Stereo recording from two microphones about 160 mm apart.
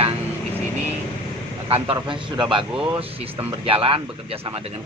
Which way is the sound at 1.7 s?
35° right (ahead or behind).